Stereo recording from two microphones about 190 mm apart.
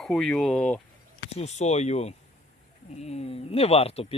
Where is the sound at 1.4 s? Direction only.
35° left (ahead or behind).